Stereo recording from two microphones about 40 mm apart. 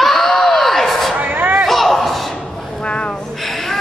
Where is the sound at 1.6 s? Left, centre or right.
Centre.